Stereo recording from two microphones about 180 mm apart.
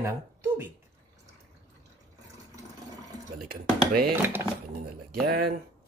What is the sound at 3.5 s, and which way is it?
Speech, 60° right (ahead or behind).